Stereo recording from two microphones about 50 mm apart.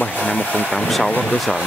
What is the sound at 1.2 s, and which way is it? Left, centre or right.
Speech, centre.